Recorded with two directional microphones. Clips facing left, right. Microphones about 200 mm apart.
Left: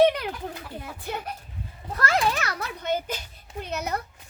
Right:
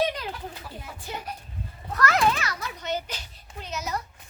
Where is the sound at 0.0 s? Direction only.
60° left (ahead or behind).